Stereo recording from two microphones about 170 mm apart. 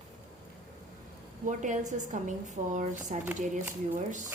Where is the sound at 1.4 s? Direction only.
45° right (ahead or behind).